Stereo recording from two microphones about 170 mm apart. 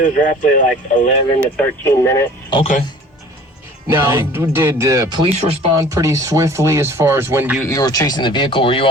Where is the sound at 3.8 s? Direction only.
15° right (ahead or behind).